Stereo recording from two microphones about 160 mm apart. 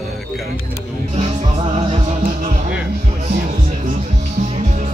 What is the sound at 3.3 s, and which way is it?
Music, 50° right (ahead or behind).